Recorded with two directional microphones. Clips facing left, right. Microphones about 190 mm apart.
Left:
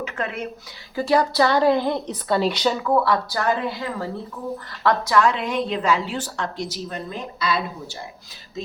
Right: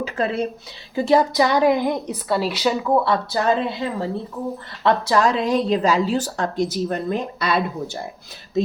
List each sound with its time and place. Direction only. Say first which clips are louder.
0.0 s a sound: right 6 dB; 35° right (ahead or behind)
0.9 s a woman's voice: right 2 dB; 20° right (ahead or behind); by 2.7 s 5° right (ahead or behind)
2.8 s speech: right 1 dB; 20° right (ahead or behind); by 7.6 s 55° right (ahead or behind)